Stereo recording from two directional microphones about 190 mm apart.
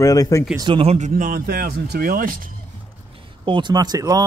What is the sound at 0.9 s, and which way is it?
Speech, 40° right (ahead or behind).